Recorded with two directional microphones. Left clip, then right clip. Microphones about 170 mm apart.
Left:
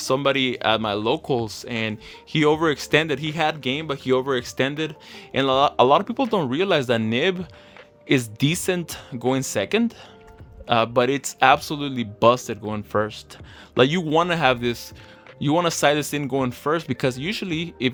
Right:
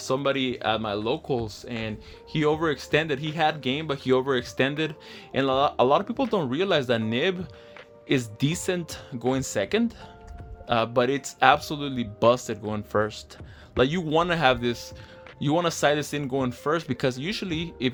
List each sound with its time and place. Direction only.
0.0 s speech: 35° left (ahead or behind)
13.7 s speech: 30° left (ahead or behind)